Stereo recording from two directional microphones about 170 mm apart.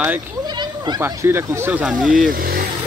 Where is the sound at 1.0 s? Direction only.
15° right (ahead or behind).